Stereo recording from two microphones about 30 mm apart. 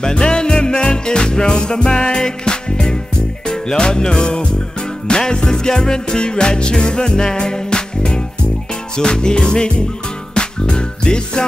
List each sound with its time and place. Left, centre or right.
0.0 s music: left